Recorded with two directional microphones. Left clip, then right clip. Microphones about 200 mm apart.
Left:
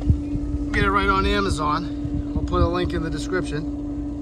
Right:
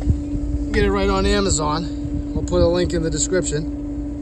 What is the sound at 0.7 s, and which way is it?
A man's voice, 5° right (ahead or behind).